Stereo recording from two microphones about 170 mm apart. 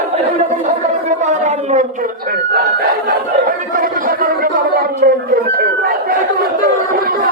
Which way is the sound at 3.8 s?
55° right (ahead or behind).